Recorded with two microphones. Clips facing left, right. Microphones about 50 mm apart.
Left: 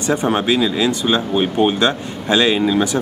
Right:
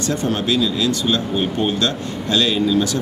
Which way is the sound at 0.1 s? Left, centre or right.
Left.